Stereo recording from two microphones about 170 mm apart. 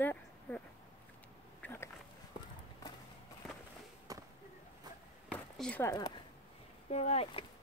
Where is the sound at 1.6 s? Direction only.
15° left (ahead or behind).